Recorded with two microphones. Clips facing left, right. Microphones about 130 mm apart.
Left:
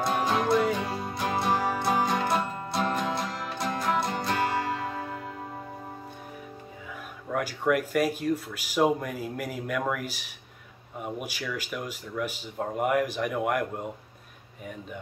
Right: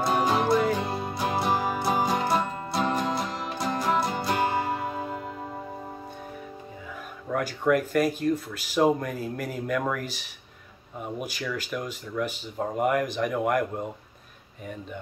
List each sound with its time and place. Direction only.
0.0 s music: 5° right (ahead or behind)
0.8 s music: 15° right (ahead or behind)
1.1 s music: 5° right (ahead or behind)
4.4 s music: 20° right (ahead or behind)
7.2 s speech: 5° left (ahead or behind)